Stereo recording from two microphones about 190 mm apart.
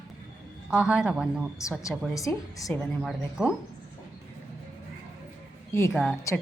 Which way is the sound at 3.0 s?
5° right (ahead or behind).